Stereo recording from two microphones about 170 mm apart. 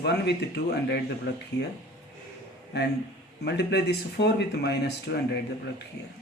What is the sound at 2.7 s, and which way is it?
Speech, 80° left.